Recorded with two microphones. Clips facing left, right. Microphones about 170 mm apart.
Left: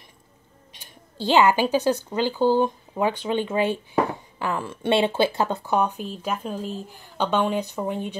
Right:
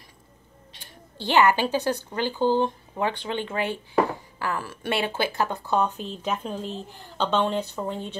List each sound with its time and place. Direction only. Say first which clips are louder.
1.2 s a woman's voice: left 2 dB; 15° left (ahead or behind)
5.8 s a woman's voice: even; 10° left (ahead or behind)